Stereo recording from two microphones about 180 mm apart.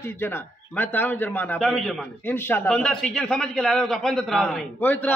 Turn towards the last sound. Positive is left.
turn(degrees=10)  # may be behind; listen again after turning